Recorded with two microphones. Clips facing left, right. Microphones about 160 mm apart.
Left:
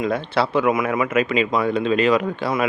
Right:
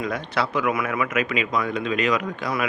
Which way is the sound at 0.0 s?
30° left (ahead or behind).